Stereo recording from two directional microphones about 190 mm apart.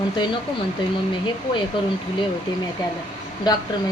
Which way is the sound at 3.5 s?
20° left (ahead or behind).